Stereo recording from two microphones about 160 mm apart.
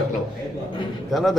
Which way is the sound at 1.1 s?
Centre (ahead or behind).